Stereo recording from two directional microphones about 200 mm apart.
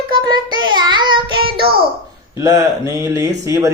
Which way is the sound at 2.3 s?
15° right (ahead or behind).